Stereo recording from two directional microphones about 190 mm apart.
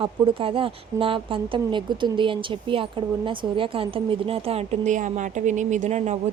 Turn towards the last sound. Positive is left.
turn(degrees=-40)  # may be behind; listen again after turning